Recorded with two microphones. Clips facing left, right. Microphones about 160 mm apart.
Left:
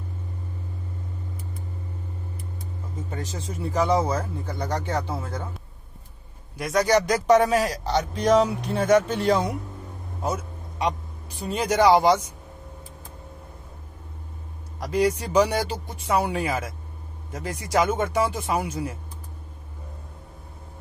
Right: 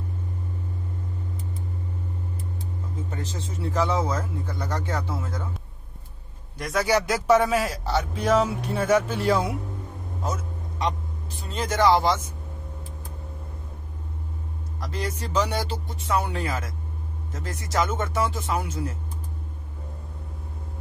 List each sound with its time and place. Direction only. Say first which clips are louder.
3.3 s speech: left 1 dB; 15° left (ahead or behind)
6.6 s a man's voice: left 3 dB; 5° right (ahead or behind)
10.2 s a sound: left 3 dB; 10° left (ahead or behind)
11.4 s speech: left 2 dB; 10° left (ahead or behind)
14.8 s speech: left 9 dB; 10° left (ahead or behind)